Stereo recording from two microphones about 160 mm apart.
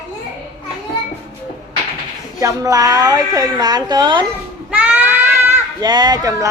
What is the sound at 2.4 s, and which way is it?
Speech, 20° right (ahead or behind).